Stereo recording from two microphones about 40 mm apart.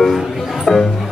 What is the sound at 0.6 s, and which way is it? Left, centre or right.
Speech, centre.